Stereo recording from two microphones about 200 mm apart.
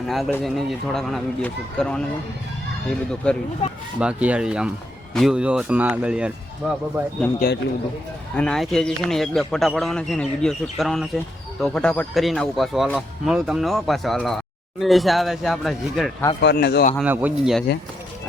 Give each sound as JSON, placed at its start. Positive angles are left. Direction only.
{"t": 0.0, "sound": "speech", "side_deg": 0}
{"t": 7.3, "sound": "a man's voice", "side_deg": 50}
{"t": 8.4, "sound": "speech", "side_deg": 5}
{"t": 16.4, "sound": "a man's voice", "side_deg": 55}
{"t": 17.0, "sound": "speech", "side_deg": -10}